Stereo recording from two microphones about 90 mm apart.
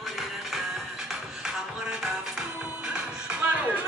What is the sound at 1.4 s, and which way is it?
Music, 5° right (ahead or behind).